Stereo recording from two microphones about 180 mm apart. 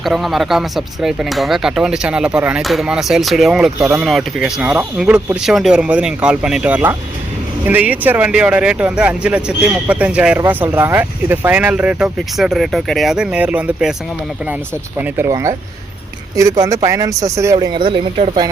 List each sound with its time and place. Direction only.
0.0 s speech: centre (ahead or behind)
14.9 s speech: 10° right (ahead or behind)